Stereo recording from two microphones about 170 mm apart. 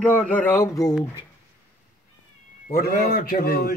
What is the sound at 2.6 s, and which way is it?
A man's voice, 65° left (ahead or behind).